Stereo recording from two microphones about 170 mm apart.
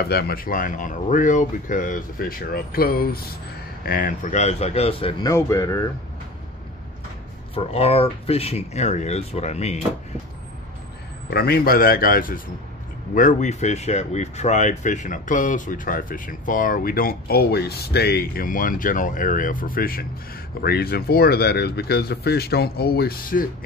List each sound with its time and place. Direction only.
0.0 s speech: 65° left (ahead or behind); by 5.1 s 35° left (ahead or behind)
5.2 s speech: 20° left (ahead or behind)
7.5 s speech: 35° left (ahead or behind)
11.2 s speech: 65° left (ahead or behind)